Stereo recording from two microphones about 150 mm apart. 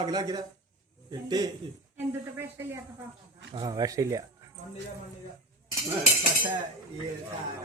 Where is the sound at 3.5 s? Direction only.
30° right (ahead or behind).